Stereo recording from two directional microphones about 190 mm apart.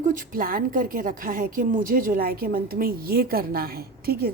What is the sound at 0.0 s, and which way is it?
A woman's voice, 45° right (ahead or behind).